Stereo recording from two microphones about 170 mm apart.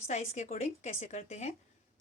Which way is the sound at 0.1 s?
45° left (ahead or behind).